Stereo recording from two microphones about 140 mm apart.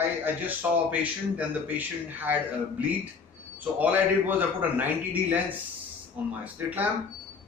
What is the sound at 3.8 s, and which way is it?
A man's voice, 10° right (ahead or behind).